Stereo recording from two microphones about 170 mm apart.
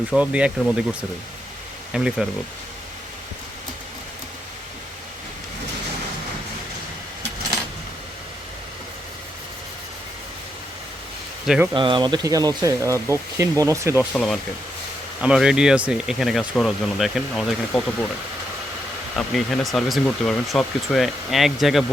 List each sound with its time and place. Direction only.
0.1 s speech: 5° right (ahead or behind)
1.9 s speech: 5° right (ahead or behind)
11.4 s speech: 5° right (ahead or behind)
11.7 s speech: 30° right (ahead or behind)
14.1 s speech: centre (ahead or behind)
19.1 s speech: centre (ahead or behind)